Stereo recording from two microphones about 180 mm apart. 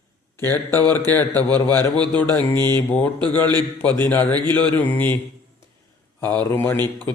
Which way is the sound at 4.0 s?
10° left (ahead or behind).